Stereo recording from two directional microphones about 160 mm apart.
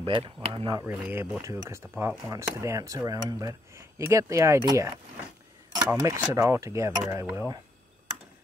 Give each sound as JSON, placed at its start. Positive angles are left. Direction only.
{"t": 0.0, "sound": "speech", "side_deg": -35}
{"t": 0.8, "sound": "speech", "side_deg": -10}
{"t": 5.9, "sound": "speech", "side_deg": -20}